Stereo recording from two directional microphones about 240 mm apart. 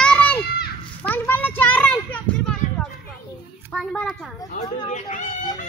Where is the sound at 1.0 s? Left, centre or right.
Centre.